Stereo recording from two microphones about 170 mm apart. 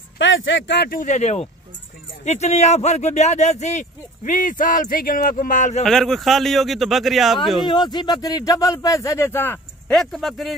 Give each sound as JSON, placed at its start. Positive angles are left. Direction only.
{"t": 0.2, "sound": "speech", "side_deg": 90}
{"t": 5.9, "sound": "speech", "side_deg": 0}
{"t": 7.6, "sound": "speech", "side_deg": 25}
{"t": 9.9, "sound": "speech", "side_deg": 0}